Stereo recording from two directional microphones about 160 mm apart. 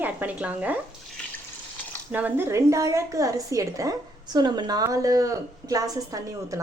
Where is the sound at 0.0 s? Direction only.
10° right (ahead or behind).